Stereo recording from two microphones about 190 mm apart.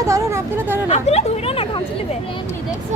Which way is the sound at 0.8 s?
35° left (ahead or behind).